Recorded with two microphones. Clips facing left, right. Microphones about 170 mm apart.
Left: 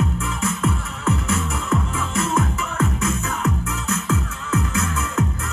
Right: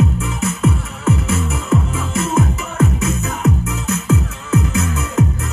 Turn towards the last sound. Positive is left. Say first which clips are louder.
# right 4 dB
turn(degrees=-20)  # may be behind; listen again after turning